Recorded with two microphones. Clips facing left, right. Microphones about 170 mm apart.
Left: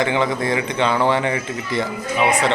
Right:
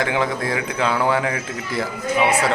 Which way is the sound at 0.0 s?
Centre (ahead or behind).